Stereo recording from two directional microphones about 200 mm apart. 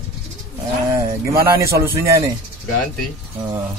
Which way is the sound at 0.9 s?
15° right (ahead or behind).